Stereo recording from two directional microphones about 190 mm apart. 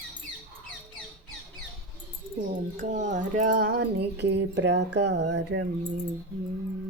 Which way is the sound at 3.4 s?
45° right (ahead or behind).